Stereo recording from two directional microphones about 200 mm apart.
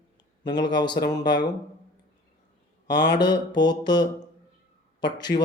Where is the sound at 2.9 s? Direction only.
60° left (ahead or behind).